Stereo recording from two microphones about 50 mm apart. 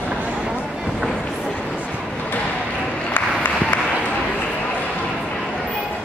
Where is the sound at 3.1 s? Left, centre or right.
Left.